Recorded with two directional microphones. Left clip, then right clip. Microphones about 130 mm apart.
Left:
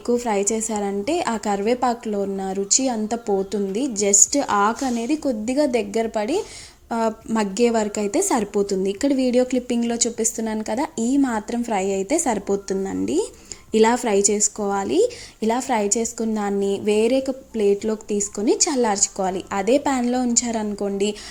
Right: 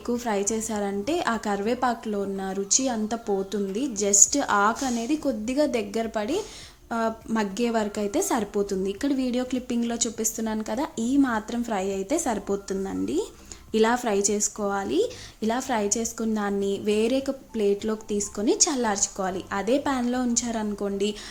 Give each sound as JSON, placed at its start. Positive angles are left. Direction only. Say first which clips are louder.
{"t": 0.1, "sound": "a woman's voice", "louder": "left 6 dB", "side_deg": 20}